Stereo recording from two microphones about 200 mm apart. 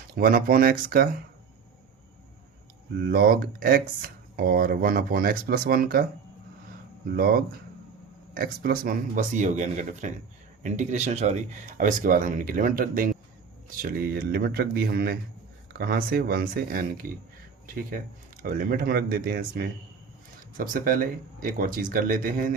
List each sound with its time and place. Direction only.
0.1 s speech: 45° right (ahead or behind)
3.1 s speech: 50° right (ahead or behind)
7.1 s speech: 50° right (ahead or behind)
18.4 s speech: 45° right (ahead or behind)